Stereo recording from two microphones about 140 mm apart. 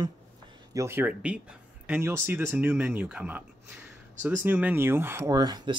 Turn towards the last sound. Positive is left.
turn(degrees=-30)  # may be behind; listen again after turning